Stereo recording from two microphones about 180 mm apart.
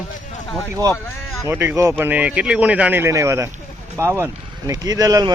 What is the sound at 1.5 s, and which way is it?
Speech, 15° right (ahead or behind).